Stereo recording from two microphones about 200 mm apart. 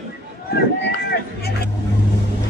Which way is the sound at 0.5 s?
55° left (ahead or behind).